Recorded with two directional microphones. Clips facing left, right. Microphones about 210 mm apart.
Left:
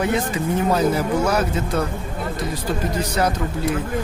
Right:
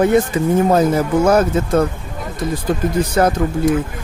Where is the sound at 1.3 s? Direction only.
50° right (ahead or behind).